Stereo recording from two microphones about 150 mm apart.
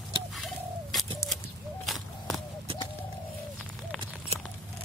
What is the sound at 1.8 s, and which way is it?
Walk, centre (ahead or behind).